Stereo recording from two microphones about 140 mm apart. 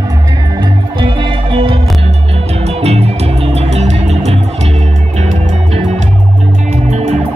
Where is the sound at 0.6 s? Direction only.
35° right (ahead or behind).